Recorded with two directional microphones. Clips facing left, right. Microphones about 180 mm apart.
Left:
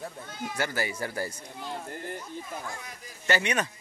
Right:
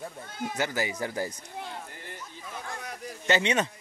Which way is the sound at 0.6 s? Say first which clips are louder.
Right 1 dB; 15° right (ahead or behind).